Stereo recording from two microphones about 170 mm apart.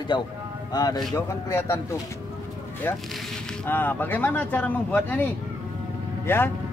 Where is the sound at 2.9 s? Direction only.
15° left (ahead or behind).